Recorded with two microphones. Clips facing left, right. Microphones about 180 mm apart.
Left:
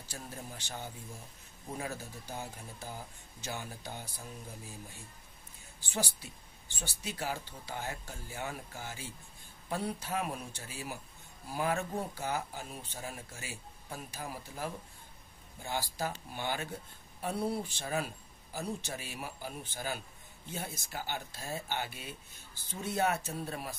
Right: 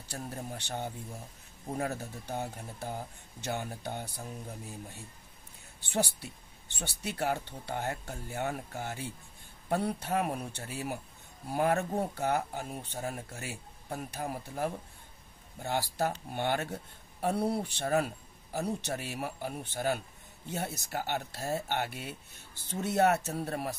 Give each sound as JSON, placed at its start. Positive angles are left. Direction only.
{"t": 0.1, "sound": "speech", "side_deg": -60}
{"t": 5.8, "sound": "speech", "side_deg": -65}